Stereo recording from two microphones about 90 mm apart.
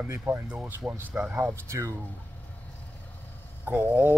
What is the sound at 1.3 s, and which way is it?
Speech, 30° right (ahead or behind).